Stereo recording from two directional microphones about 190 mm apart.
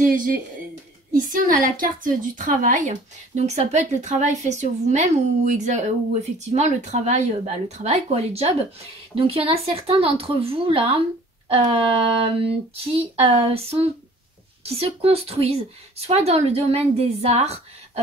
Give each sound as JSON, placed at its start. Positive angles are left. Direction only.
{"t": 0.0, "sound": "a woman's voice", "side_deg": -45}